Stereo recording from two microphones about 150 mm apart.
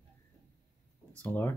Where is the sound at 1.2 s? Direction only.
10° left (ahead or behind).